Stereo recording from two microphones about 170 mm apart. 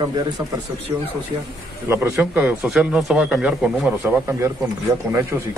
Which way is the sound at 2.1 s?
10° right (ahead or behind).